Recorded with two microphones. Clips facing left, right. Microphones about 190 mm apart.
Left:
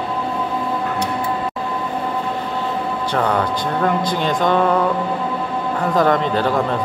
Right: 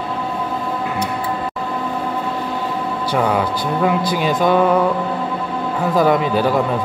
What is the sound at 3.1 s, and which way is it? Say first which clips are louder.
A man's voice: right 1 dB; 10° right (ahead or behind).